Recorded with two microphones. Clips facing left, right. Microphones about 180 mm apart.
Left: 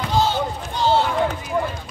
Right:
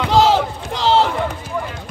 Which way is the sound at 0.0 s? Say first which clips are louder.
Right 6 dB; 90° right.